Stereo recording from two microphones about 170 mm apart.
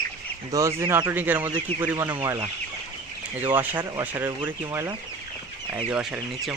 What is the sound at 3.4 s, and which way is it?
Speech, 10° right (ahead or behind).